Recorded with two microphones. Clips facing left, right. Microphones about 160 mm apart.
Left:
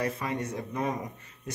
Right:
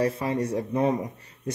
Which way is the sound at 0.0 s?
30° right (ahead or behind).